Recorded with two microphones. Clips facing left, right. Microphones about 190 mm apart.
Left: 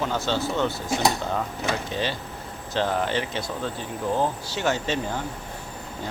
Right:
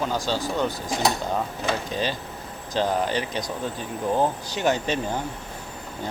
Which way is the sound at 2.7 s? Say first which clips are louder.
Right 1 dB; 15° right (ahead or behind).